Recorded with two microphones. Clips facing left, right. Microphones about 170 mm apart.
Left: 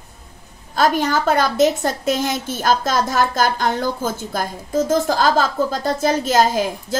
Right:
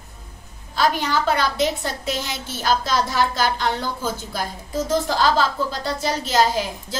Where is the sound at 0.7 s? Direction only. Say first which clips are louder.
Left 3 dB; 45° left (ahead or behind).